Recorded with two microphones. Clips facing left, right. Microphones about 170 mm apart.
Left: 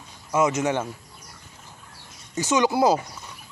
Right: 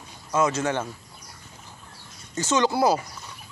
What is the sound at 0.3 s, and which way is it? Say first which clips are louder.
Speech: left 2 dB; 20° left (ahead or behind).